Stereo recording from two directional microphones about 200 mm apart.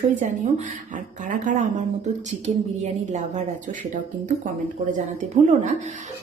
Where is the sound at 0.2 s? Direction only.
40° right (ahead or behind).